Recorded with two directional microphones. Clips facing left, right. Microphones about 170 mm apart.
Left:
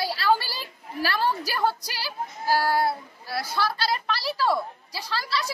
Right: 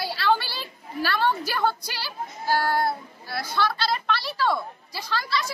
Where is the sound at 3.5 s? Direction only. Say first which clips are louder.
Right 2 dB; 40° left (ahead or behind).